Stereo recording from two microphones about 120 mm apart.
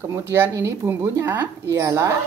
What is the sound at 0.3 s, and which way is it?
A woman's voice, 20° right (ahead or behind).